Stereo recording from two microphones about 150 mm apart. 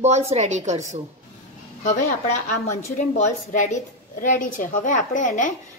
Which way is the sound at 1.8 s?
55° left (ahead or behind).